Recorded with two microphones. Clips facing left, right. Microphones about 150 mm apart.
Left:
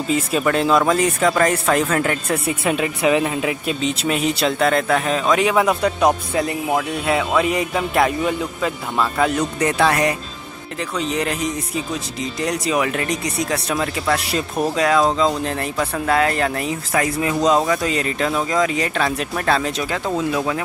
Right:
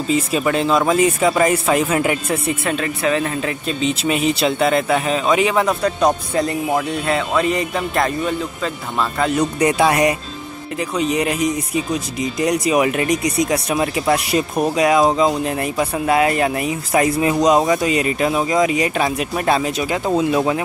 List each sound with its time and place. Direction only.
0.1 s speech: 5° right (ahead or behind)
2.7 s speech: 15° left (ahead or behind)
3.8 s speech: 5° right (ahead or behind)
9.4 s speech: 15° right (ahead or behind)